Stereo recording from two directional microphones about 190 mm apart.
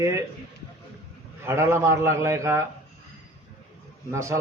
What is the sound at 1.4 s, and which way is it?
A man's voice, 15° right (ahead or behind).